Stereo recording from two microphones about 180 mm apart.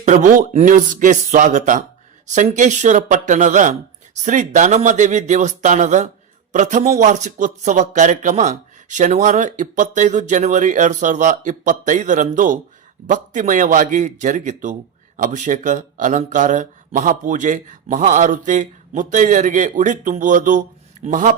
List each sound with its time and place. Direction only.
0.0 s speech: 40° right (ahead or behind)